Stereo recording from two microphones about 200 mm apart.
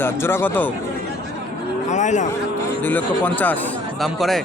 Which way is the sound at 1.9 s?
35° left (ahead or behind).